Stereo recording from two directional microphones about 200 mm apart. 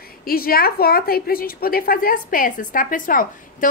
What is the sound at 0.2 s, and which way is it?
A woman's voice, 50° left (ahead or behind).